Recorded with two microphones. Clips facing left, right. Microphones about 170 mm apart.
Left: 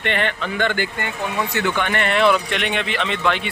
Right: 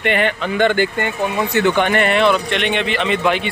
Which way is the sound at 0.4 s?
20° right (ahead or behind).